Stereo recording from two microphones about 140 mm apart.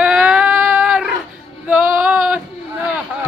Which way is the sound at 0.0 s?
5° right (ahead or behind).